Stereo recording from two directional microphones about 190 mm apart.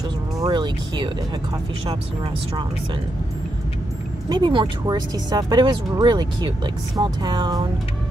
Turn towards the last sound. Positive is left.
turn(degrees=-20)  # may be behind; listen again after turning